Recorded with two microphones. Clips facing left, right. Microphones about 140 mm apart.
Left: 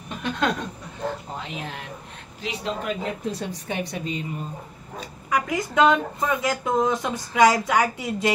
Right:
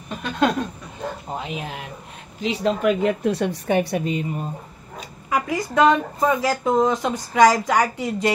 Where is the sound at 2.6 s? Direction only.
65° right (ahead or behind).